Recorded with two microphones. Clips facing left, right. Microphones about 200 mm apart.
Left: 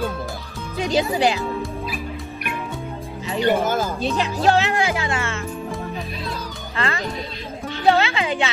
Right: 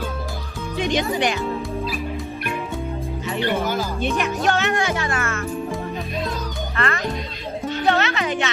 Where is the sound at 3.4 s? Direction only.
50° left (ahead or behind).